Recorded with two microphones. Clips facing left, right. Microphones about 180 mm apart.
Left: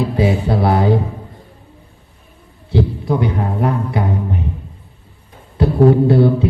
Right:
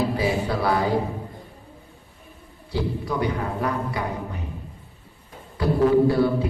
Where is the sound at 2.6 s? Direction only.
25° left (ahead or behind).